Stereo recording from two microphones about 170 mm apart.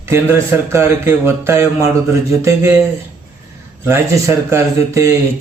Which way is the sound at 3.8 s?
15° right (ahead or behind).